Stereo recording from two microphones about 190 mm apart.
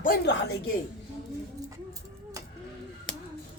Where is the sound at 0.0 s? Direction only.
50° left (ahead or behind).